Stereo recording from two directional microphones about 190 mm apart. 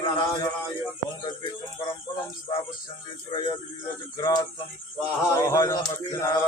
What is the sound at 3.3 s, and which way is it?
Mantra, 25° left (ahead or behind).